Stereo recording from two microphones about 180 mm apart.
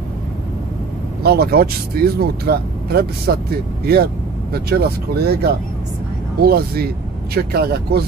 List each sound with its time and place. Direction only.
1.2 s speech: 60° right (ahead or behind)